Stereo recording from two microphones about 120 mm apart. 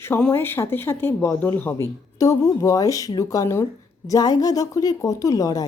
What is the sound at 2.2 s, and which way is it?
A woman's voice, 30° left (ahead or behind).